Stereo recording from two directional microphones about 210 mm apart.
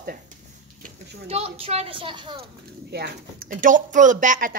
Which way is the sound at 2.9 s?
50° right (ahead or behind).